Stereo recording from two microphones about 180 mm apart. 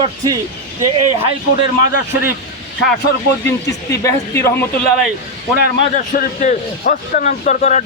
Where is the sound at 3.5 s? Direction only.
15° left (ahead or behind).